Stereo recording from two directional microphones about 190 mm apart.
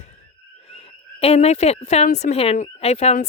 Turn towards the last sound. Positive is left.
turn(degrees=35)  # may be behind; listen again after turning